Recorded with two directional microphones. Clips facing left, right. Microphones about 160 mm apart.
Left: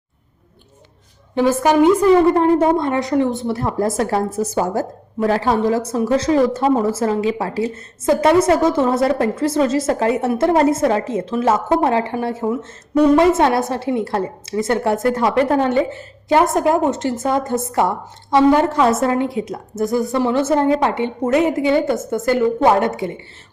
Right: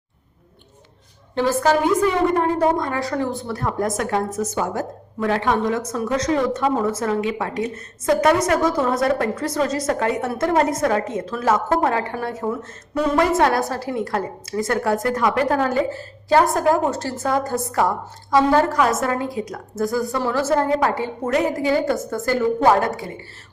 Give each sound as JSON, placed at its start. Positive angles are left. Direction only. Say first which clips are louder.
{"t": 1.4, "sound": "a woman's voice", "louder": "left 4 dB", "side_deg": 15}